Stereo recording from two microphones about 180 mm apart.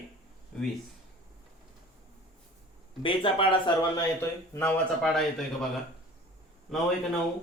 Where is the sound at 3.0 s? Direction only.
30° left (ahead or behind).